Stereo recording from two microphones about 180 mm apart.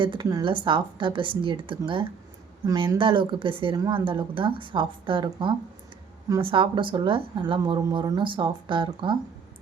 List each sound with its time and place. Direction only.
0.0 s a woman's voice: 25° right (ahead or behind)